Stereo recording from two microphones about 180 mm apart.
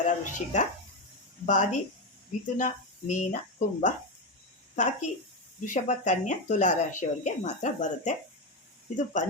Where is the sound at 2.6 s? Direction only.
45° left (ahead or behind).